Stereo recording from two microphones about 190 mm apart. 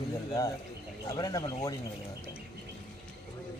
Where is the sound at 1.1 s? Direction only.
20° left (ahead or behind).